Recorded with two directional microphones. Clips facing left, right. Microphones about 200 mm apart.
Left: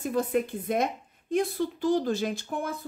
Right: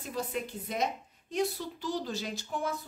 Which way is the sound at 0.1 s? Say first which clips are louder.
Left 7 dB; 55° left (ahead or behind).